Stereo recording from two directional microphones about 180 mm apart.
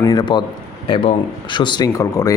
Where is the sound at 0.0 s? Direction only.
25° left (ahead or behind).